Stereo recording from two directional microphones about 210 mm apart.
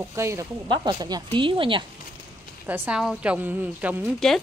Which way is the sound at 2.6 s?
10° right (ahead or behind).